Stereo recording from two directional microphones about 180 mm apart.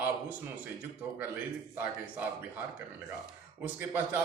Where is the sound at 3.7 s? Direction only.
10° right (ahead or behind).